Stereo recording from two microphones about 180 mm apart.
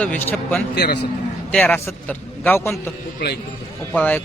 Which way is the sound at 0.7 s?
65° left (ahead or behind).